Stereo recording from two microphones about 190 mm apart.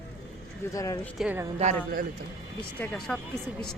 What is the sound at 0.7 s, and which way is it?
Speech, 15° left (ahead or behind).